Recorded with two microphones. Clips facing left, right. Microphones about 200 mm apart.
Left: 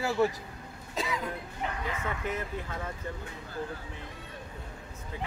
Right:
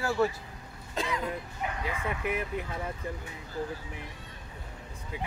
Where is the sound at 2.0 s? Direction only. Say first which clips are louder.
Right 3 dB; 15° right (ahead or behind).